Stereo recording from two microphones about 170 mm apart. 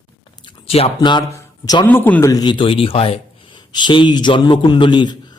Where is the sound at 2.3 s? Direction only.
25° left (ahead or behind).